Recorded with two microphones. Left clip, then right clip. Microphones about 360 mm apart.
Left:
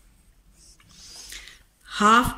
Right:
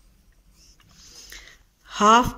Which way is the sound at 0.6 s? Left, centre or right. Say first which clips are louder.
Left 3 dB; right.